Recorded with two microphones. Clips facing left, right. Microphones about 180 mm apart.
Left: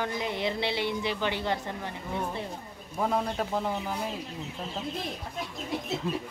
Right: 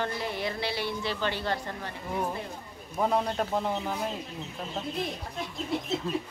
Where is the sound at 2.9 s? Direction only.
Centre (ahead or behind).